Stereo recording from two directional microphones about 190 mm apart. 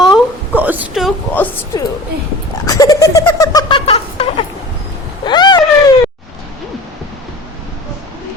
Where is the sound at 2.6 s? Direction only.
20° left (ahead or behind).